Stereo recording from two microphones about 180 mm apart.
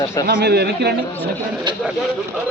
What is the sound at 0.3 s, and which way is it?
Speech, 60° right (ahead or behind).